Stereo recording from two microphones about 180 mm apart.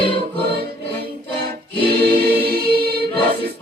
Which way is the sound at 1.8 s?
65° right (ahead or behind).